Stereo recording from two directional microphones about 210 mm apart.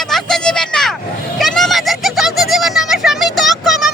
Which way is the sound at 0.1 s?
Centre (ahead or behind).